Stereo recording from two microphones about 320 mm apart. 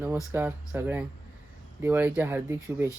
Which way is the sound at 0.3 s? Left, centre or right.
Centre.